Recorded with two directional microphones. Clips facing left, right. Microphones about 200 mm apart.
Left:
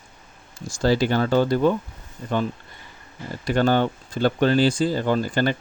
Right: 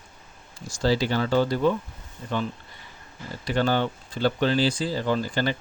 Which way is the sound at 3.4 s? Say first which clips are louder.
Left 4 dB; 50° left (ahead or behind).